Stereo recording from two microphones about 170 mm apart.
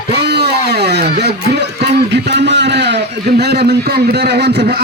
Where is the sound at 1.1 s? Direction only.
75° right (ahead or behind).